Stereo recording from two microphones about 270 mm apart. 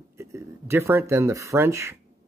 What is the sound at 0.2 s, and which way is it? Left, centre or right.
Speech, centre.